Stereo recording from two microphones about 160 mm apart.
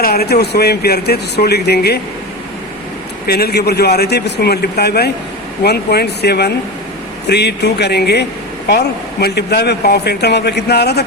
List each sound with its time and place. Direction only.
0.0 s speech: 80° left
3.2 s speech: 75° left (ahead or behind)